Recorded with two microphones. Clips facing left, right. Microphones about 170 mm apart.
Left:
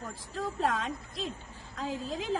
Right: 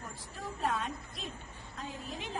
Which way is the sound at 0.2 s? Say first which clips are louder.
Left 5 dB; 90° left.